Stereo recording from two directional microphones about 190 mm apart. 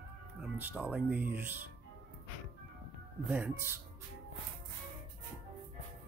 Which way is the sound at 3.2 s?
10° right (ahead or behind).